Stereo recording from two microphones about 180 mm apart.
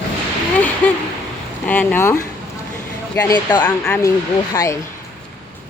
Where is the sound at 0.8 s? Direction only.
10° left (ahead or behind).